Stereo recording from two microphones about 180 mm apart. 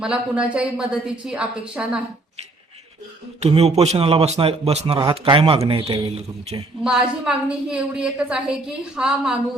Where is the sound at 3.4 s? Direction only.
35° right (ahead or behind).